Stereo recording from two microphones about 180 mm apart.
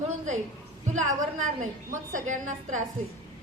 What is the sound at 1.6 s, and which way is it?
A woman's voice, 45° right (ahead or behind).